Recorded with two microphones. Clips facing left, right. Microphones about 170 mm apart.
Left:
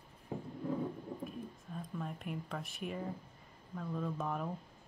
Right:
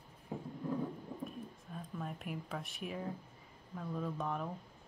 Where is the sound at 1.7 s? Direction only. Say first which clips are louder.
Left 1 dB; centre (ahead or behind).